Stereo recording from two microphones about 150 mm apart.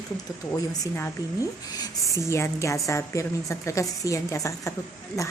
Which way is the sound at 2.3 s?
20° left (ahead or behind).